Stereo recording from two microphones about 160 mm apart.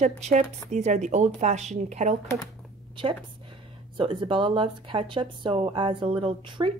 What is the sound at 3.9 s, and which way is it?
Speech, 30° right (ahead or behind).